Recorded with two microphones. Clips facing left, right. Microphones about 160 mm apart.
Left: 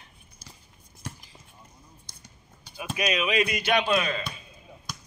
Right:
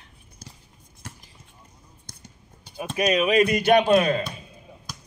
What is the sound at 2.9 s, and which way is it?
Speech, 45° right (ahead or behind).